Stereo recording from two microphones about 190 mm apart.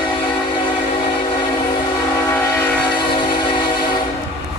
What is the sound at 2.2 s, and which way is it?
Train, 15° left (ahead or behind).